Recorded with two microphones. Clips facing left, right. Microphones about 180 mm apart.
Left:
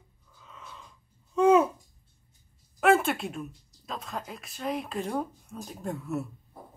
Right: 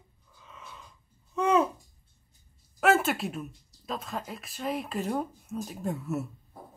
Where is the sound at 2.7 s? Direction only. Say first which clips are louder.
Left 1 dB; centre (ahead or behind).